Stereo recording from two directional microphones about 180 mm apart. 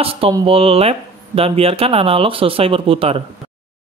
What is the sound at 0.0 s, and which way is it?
Speech, 30° right (ahead or behind).